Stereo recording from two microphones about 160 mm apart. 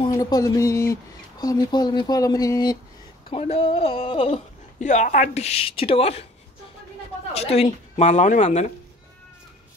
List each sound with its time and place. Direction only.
0.0 s a sound: 25° left (ahead or behind)
1.4 s speech: 25° left (ahead or behind)
3.3 s a woman's voice: 35° left (ahead or behind)
4.7 s a woman's voice: 50° left (ahead or behind)
7.3 s a woman's voice: 40° left (ahead or behind)